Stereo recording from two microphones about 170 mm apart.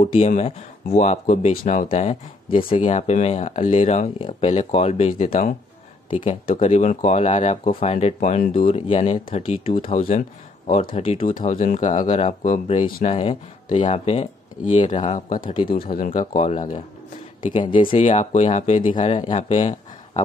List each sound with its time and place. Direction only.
0.0 s speech: 40° left (ahead or behind)
1.9 s speech: 35° left (ahead or behind)
6.6 s speech: 40° left (ahead or behind)
11.3 s speech: 50° left (ahead or behind)
13.0 s speech: 35° left (ahead or behind)
13.7 s speech: 45° left (ahead or behind)
15.5 s speech: 30° left (ahead or behind)
15.8 s speech: 55° left (ahead or behind)
17.6 s speech: 30° left (ahead or behind)
18.0 s speech: 45° left (ahead or behind)